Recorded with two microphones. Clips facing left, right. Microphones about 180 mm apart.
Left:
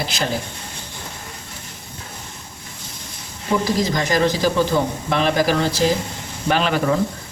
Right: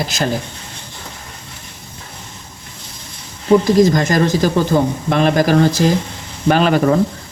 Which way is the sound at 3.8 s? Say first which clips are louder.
Right 6 dB; 45° right (ahead or behind).